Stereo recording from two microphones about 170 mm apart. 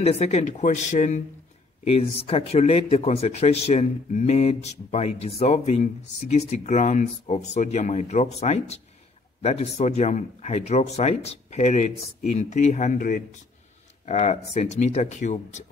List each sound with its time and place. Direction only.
0.0 s speech: 40° left (ahead or behind)